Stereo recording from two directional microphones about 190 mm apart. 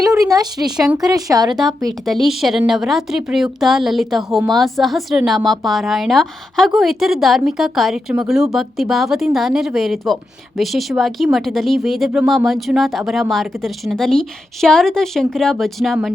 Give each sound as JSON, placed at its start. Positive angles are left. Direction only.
{"t": 0.0, "sound": "speech", "side_deg": -20}
{"t": 2.0, "sound": "speech", "side_deg": 0}